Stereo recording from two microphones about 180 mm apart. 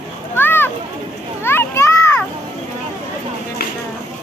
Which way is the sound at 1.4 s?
15° left (ahead or behind).